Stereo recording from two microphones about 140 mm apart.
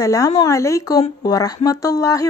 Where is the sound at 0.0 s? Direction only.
25° left (ahead or behind).